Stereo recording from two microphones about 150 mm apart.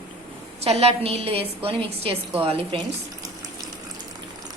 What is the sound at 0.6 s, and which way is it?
A woman's voice, 40° right (ahead or behind).